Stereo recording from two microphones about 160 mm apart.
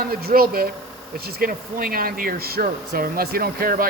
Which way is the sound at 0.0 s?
70° right (ahead or behind).